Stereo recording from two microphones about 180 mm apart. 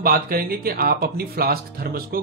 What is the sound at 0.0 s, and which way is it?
Speech, 55° right (ahead or behind).